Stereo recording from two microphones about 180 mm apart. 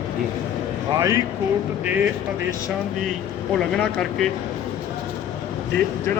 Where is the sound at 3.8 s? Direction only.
5° left (ahead or behind).